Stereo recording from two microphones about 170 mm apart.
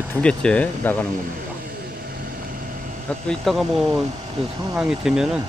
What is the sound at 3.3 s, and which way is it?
Speech, centre (ahead or behind).